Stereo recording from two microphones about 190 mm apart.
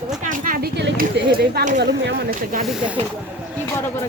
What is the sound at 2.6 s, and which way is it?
Speech, centre (ahead or behind).